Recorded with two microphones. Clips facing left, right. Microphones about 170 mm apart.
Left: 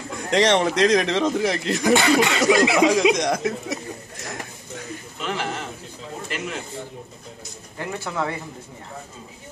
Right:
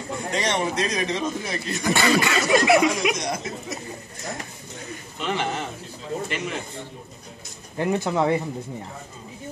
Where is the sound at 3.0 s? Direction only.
90° left.